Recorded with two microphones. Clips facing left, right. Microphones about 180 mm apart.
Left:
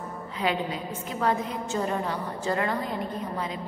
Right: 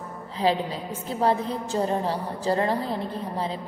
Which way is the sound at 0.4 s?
30° right (ahead or behind).